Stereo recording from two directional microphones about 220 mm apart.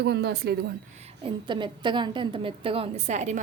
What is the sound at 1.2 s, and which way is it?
A woman's voice, 20° right (ahead or behind).